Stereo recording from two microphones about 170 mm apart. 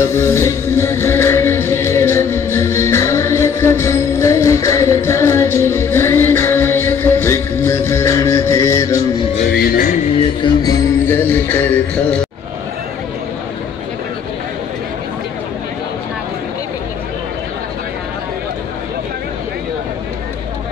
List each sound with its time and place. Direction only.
0.0 s music: 15° left (ahead or behind)
9.5 s music: 60° left (ahead or behind)
10.1 s music: 25° left (ahead or behind)
11.1 s a sound: 10° left (ahead or behind)